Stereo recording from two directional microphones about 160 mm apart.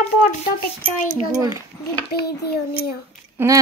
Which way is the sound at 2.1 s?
85° left.